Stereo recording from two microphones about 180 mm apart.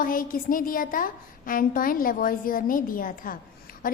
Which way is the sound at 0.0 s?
50° left (ahead or behind).